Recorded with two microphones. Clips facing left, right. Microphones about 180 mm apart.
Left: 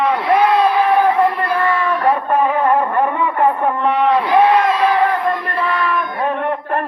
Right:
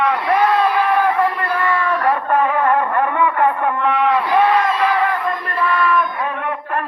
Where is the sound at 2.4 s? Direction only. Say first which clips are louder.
Left 3 dB; 25° left (ahead or behind).